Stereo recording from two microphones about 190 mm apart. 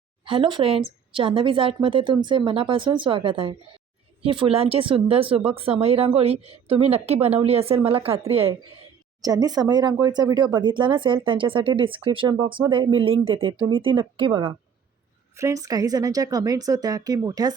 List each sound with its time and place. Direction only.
0.3 s speech: 25° right (ahead or behind)
9.2 s speech: 20° right (ahead or behind)
15.4 s speech: 15° right (ahead or behind)